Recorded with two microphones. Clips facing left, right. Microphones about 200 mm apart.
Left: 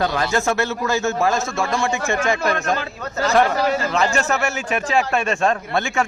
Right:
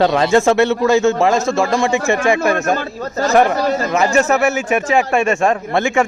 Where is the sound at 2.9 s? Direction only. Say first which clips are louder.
Right 4 dB; 35° right (ahead or behind).